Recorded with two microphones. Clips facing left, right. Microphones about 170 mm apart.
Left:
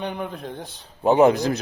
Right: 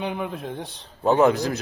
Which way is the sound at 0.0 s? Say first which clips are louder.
Right 1 dB; 5° right (ahead or behind).